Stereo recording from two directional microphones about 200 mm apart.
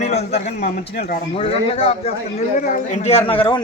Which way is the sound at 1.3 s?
30° left (ahead or behind).